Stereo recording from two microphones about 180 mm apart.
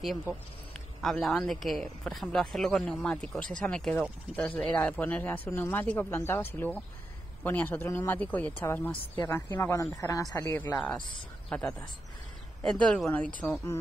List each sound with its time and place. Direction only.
0.0 s speech: 5° right (ahead or behind); by 6.4 s 15° left (ahead or behind)
7.4 s a woman's voice: 10° left (ahead or behind)